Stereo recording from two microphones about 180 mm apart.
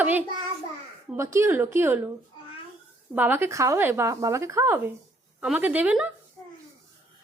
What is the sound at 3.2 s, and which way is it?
Speech, 10° right (ahead or behind).